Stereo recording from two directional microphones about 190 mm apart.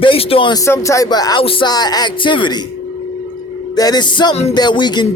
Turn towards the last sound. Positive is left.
turn(degrees=25)  # may be behind; listen again after turning